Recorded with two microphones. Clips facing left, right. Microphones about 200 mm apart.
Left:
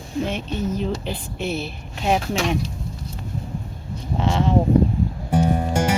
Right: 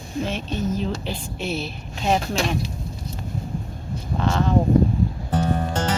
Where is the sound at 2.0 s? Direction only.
10° left (ahead or behind).